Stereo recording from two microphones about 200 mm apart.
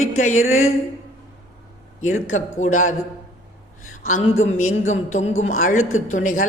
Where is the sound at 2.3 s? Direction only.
40° left (ahead or behind).